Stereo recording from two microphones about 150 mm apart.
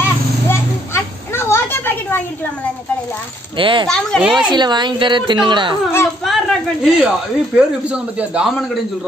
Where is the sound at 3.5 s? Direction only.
35° right (ahead or behind).